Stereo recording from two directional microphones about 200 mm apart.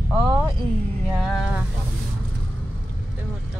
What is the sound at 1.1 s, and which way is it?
Music, centre (ahead or behind).